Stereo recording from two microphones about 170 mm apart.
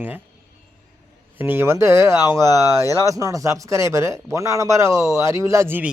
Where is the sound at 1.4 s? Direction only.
10° right (ahead or behind).